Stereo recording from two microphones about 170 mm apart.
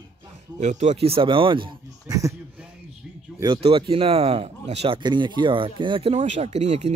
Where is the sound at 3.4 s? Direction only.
30° right (ahead or behind).